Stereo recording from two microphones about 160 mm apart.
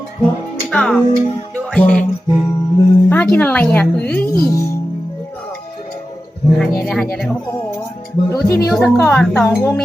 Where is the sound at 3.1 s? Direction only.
10° left (ahead or behind).